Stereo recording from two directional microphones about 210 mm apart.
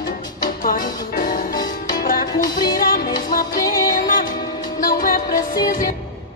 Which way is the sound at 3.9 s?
40° left (ahead or behind).